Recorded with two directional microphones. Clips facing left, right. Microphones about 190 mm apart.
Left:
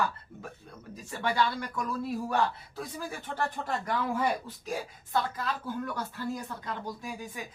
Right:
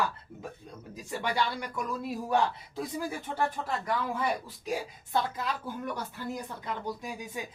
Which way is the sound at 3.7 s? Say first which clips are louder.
Left 1 dB; centre (ahead or behind).